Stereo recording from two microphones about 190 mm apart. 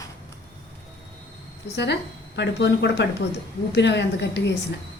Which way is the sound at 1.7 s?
65° left (ahead or behind).